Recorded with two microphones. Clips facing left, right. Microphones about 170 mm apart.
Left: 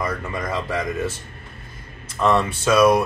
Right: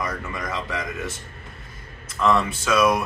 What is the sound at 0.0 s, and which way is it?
Speech, 30° left (ahead or behind).